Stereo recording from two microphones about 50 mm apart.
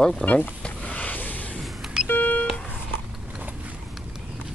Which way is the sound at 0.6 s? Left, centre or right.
Left.